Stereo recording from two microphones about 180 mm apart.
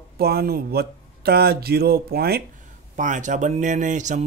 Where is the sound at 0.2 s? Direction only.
60° right (ahead or behind).